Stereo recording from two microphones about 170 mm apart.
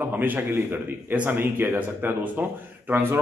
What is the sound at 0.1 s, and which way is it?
A man's voice, 10° right (ahead or behind).